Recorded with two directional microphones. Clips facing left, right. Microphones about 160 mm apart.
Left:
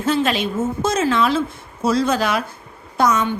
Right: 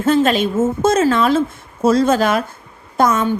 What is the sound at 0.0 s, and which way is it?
A woman's voice, 45° right (ahead or behind).